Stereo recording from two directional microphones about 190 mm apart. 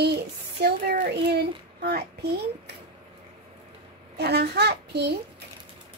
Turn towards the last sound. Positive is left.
turn(degrees=-60)  # may be behind; listen again after turning